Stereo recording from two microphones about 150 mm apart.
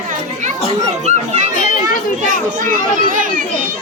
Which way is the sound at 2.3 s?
65° right (ahead or behind).